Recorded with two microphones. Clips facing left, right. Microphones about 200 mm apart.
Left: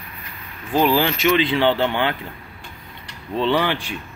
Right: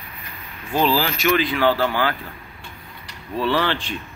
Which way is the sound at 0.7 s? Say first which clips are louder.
Left 2 dB; 20° left (ahead or behind).